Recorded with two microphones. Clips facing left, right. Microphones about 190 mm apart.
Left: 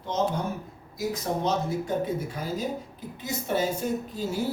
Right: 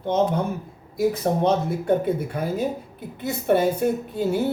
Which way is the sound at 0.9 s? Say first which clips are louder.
Right 8 dB; 60° right (ahead or behind).